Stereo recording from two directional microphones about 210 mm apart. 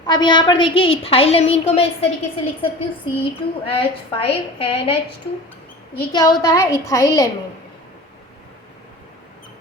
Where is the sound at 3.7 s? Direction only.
25° left (ahead or behind).